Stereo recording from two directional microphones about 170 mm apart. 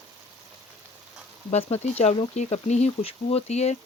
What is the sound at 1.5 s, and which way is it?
Speech, 35° left (ahead or behind).